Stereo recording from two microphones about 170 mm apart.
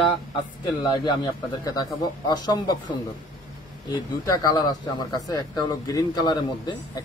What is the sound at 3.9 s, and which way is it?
Speech, 25° left (ahead or behind).